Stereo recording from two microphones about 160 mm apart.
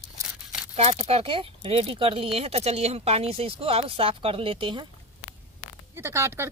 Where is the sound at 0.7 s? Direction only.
40° right (ahead or behind).